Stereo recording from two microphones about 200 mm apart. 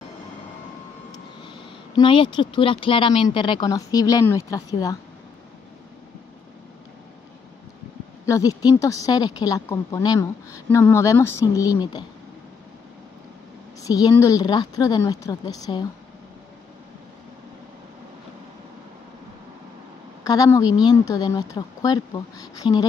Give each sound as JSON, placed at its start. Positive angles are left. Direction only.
{"t": 1.1, "sound": "a sound", "side_deg": 20}
{"t": 3.3, "sound": "speech", "side_deg": 25}
{"t": 8.3, "sound": "speech", "side_deg": 15}
{"t": 13.8, "sound": "speech", "side_deg": 15}
{"t": 20.2, "sound": "speech", "side_deg": 15}